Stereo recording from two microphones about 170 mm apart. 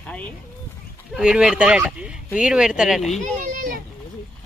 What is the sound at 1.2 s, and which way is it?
Speech, 5° right (ahead or behind).